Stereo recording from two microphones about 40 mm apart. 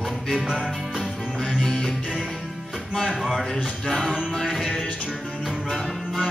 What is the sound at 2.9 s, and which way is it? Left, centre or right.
Music, centre.